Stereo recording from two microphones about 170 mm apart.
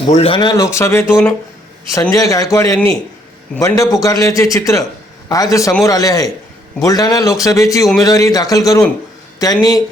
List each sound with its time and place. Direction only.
0.0 s speech: 35° left (ahead or behind); by 2.7 s 20° left (ahead or behind)
3.8 s speech: 20° left (ahead or behind)